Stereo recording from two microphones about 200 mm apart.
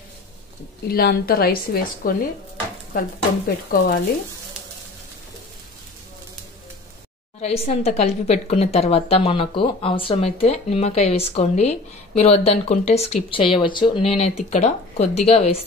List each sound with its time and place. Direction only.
0.8 s a woman's voice: 50° left (ahead or behind)
3.4 s a woman's voice: 45° left (ahead or behind)
7.4 s a woman's voice: 30° left (ahead or behind)